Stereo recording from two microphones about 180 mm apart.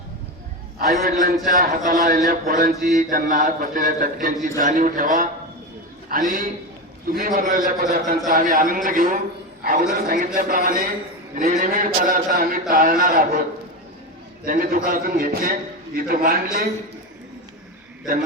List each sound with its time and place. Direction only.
0.8 s a man's voice: 55° right (ahead or behind)
14.4 s a man's voice: 55° right (ahead or behind)